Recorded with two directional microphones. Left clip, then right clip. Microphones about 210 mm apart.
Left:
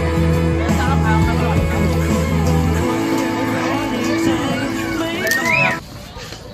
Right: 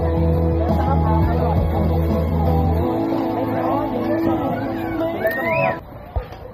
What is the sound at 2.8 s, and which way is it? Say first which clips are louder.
Music: left 2 dB; 5° right (ahead or behind).